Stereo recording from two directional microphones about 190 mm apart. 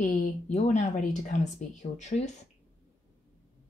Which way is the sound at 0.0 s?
40° left (ahead or behind).